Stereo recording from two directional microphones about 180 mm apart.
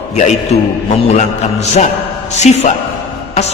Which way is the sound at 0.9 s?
40° left (ahead or behind).